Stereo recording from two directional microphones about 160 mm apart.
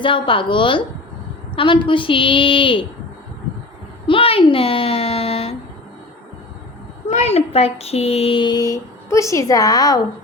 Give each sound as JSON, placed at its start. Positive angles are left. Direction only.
{"t": 0.0, "sound": "a woman's voice", "side_deg": 30}
{"t": 4.0, "sound": "a sound", "side_deg": 35}
{"t": 7.1, "sound": "speech", "side_deg": 45}